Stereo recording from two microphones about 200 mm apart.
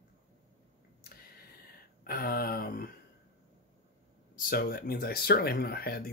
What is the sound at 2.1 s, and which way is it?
Speech, 50° left (ahead or behind).